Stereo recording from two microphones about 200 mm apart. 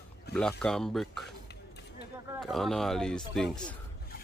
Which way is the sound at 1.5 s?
55° left (ahead or behind).